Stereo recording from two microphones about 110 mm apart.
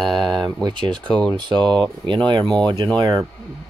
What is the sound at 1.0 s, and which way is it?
Speech, 5° left (ahead or behind).